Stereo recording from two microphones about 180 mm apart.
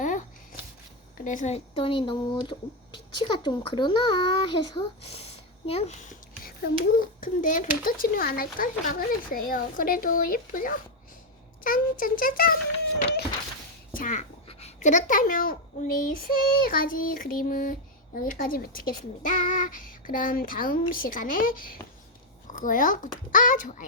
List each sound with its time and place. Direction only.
0.0 s a sound: 45° left (ahead or behind)
1.2 s speech: 45° left (ahead or behind)
6.4 s speech: 55° left (ahead or behind)
13.9 s speech: 45° left (ahead or behind)